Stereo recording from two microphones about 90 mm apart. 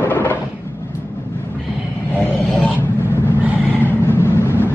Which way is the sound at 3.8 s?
20° left (ahead or behind).